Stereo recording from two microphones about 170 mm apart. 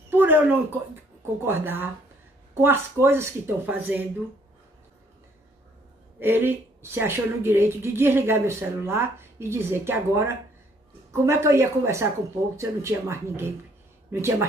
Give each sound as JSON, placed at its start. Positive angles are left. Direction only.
{"t": 0.1, "sound": "speech", "side_deg": -10}
{"t": 6.1, "sound": "speech", "side_deg": -10}